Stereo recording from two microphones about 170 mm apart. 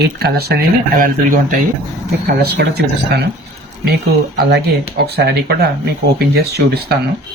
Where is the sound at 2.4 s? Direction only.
70° right (ahead or behind).